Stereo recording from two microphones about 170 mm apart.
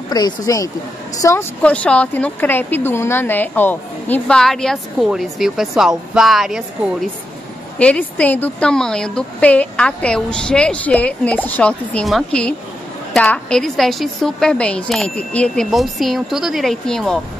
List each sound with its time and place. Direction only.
0.1 s a woman's voice: 20° left (ahead or behind); by 17.2 s 5° left (ahead or behind)